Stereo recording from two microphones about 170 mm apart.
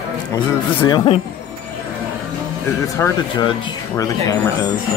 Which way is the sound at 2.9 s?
15° left (ahead or behind).